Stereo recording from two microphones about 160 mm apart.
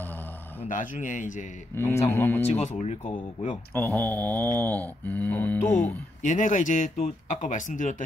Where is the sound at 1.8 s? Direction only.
15° left (ahead or behind).